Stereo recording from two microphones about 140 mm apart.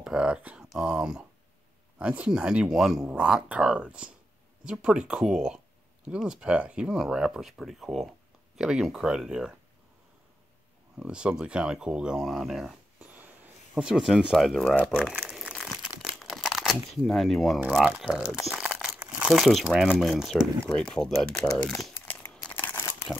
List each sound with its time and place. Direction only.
0.0 s speech: 5° right (ahead or behind)
11.0 s speech: 5° right (ahead or behind)
15.1 s crumpling: 5° right (ahead or behind)
17.7 s speech: 5° right (ahead or behind)
21.9 s crumpling: 15° left (ahead or behind)